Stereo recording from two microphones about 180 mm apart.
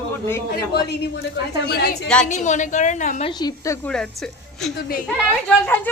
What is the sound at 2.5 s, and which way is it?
Speech, 45° left (ahead or behind).